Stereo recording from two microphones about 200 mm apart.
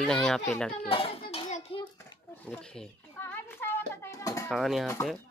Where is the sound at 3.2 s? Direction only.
10° left (ahead or behind).